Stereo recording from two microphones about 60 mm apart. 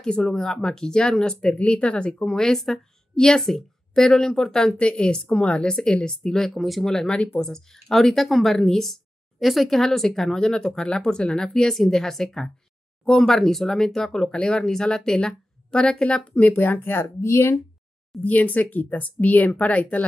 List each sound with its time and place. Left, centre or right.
0.2 s a woman's voice: centre
16.3 s speech: left
17.2 s speech: left
18.2 s speech: left